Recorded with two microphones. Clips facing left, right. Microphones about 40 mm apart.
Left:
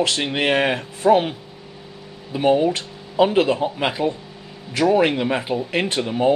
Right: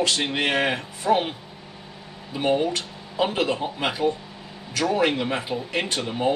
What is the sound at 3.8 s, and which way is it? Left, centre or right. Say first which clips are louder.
A man's voice: left 2 dB; left.